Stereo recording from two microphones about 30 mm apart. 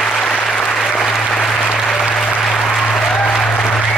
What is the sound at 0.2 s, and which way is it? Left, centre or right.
Applause, left.